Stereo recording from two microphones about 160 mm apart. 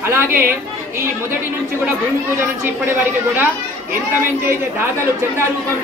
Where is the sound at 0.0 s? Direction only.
15° right (ahead or behind).